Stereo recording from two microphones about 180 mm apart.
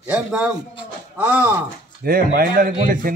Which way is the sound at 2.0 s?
55° right (ahead or behind).